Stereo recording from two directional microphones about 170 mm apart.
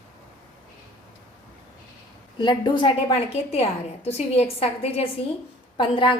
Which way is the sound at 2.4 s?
25° left (ahead or behind).